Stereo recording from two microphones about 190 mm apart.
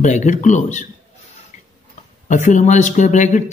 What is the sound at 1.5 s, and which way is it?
Tick-tock, 40° left (ahead or behind).